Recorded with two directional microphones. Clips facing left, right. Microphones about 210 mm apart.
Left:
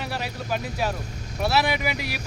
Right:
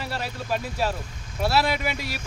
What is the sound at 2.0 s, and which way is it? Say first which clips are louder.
Speech: left 1 dB; 65° left (ahead or behind).